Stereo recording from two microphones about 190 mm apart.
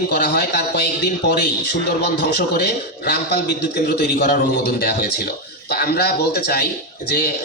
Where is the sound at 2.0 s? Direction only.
55° left (ahead or behind).